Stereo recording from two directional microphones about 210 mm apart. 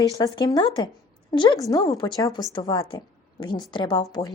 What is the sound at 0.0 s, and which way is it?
A woman's voice, 20° left (ahead or behind).